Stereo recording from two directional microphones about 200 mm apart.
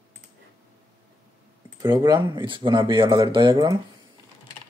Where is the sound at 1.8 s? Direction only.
20° right (ahead or behind).